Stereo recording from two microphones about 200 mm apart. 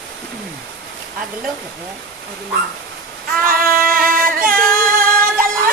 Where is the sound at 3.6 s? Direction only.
45° right (ahead or behind).